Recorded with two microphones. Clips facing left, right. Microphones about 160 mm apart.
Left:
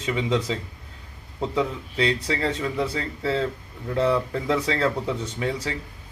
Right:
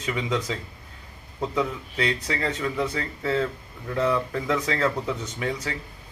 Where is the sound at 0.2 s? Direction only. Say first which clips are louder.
Left 4 dB; 25° left (ahead or behind).